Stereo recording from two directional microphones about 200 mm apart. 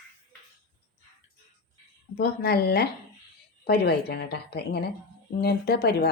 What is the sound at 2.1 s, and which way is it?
A woman's voice, 50° left (ahead or behind).